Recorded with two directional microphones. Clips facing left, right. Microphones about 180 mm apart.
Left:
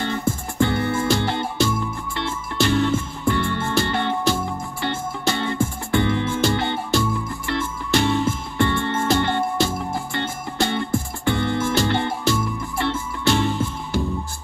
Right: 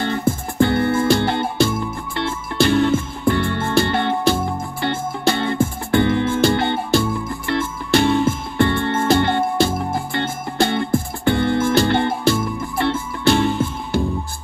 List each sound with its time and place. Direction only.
0.6 s music: 60° right (ahead or behind)